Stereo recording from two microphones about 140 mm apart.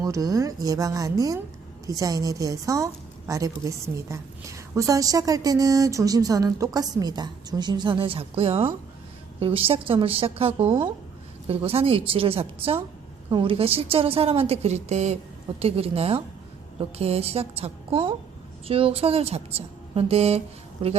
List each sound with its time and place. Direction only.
0.0 s a woman's voice: 25° right (ahead or behind); by 20.4 s 45° right (ahead or behind)